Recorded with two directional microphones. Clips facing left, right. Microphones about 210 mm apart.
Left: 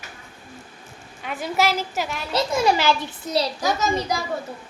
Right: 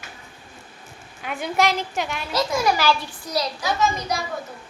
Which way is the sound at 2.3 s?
25° left (ahead or behind).